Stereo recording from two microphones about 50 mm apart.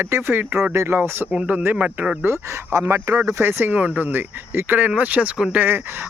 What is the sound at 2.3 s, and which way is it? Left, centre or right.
Speech, right.